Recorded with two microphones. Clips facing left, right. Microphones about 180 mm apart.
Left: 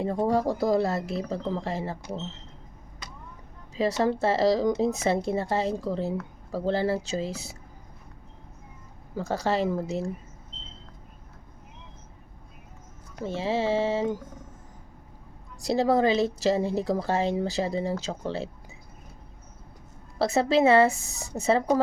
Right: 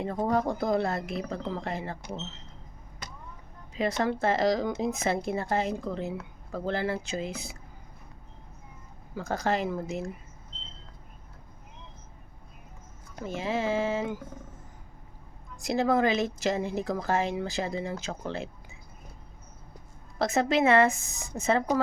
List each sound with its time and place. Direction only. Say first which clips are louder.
0.3 s speech: left 2 dB; 30° left (ahead or behind)
3.8 s speech: left 3 dB; 35° left (ahead or behind)
9.1 s speech: left 2 dB; 35° left (ahead or behind)
13.2 s speech: left 3 dB; 30° left (ahead or behind)
15.6 s speech: left 3 dB; 35° left (ahead or behind)
20.1 s speech: left 3 dB; 35° left (ahead or behind)